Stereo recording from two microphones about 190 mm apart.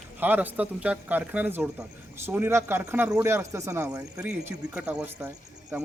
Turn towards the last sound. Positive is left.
turn(degrees=-5)  # may be behind; listen again after turning